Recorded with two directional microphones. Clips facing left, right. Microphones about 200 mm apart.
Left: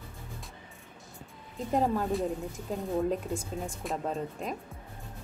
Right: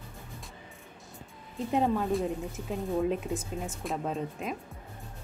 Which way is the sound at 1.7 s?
Centre (ahead or behind).